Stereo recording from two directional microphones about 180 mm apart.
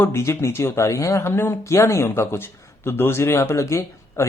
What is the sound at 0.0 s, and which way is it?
Speech, 15° left (ahead or behind).